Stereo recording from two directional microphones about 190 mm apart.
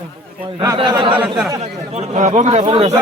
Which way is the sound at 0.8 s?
25° right (ahead or behind).